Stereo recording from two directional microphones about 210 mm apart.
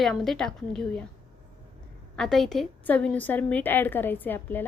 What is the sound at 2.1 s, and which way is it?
A woman's voice, centre (ahead or behind).